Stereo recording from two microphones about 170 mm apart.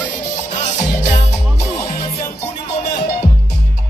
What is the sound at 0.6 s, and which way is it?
Music, 45° left (ahead or behind).